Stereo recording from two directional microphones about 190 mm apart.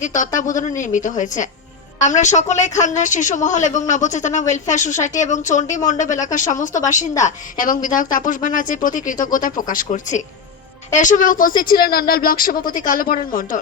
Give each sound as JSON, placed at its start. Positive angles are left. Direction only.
{"t": 0.0, "sound": "a woman's voice", "side_deg": 40}